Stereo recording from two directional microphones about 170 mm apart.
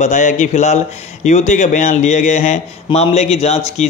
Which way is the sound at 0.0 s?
45° left (ahead or behind).